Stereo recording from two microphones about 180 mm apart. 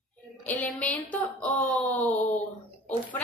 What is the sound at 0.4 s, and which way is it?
Speech, 10° left (ahead or behind).